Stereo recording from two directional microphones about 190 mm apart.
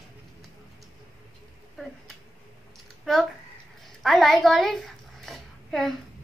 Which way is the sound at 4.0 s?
Centre (ahead or behind).